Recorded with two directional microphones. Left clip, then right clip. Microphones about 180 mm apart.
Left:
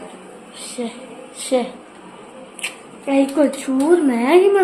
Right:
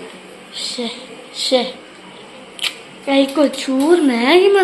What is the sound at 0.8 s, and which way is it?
Speech, 5° right (ahead or behind).